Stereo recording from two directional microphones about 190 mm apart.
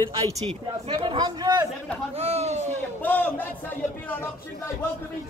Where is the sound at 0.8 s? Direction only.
25° right (ahead or behind).